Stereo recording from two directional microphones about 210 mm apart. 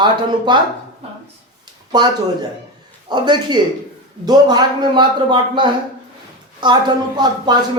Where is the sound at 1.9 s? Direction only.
20° right (ahead or behind).